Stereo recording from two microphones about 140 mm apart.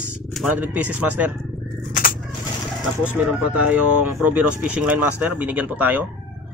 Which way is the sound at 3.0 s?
10° right (ahead or behind).